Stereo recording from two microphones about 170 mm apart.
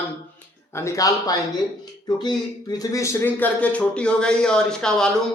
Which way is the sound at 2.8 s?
20° left (ahead or behind).